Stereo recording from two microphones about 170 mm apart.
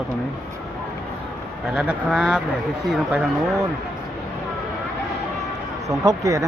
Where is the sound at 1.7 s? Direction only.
5° right (ahead or behind).